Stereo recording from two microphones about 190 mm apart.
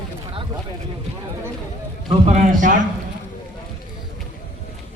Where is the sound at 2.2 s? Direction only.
40° right (ahead or behind).